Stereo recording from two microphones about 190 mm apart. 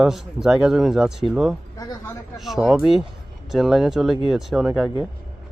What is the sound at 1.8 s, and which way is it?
Speech, 20° left (ahead or behind).